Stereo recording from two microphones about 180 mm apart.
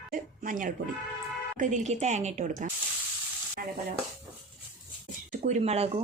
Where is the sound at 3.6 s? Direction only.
60° right (ahead or behind).